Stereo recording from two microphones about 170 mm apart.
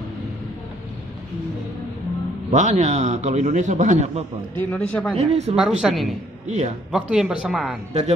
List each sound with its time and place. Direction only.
2.5 s a man's voice: 45° right (ahead or behind)
4.6 s speech: 5° left (ahead or behind)
5.1 s speech: 35° right (ahead or behind)
5.6 s speech: 5° right (ahead or behind)
6.4 s a man's voice: 40° right (ahead or behind)
6.9 s speech: 5° right (ahead or behind)